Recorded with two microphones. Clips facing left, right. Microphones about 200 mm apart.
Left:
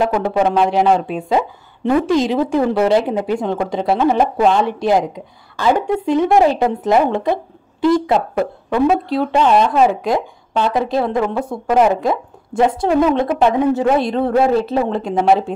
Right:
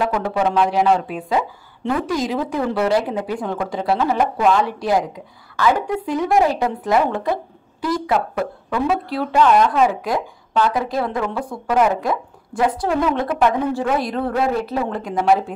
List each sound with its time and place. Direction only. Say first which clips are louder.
0.0 s a woman's voice: left 4 dB; 25° left (ahead or behind)